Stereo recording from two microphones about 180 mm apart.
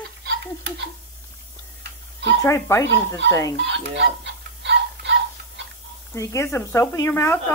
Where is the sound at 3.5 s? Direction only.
80° right.